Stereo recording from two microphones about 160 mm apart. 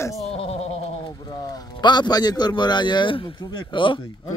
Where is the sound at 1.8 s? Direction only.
25° left (ahead or behind).